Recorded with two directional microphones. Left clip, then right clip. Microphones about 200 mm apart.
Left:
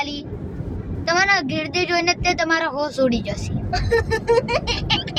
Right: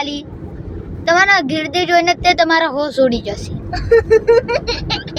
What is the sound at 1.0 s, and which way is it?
A woman's voice, 15° right (ahead or behind).